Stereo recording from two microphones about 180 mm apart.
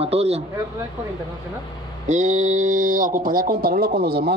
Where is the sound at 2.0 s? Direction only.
40° right (ahead or behind).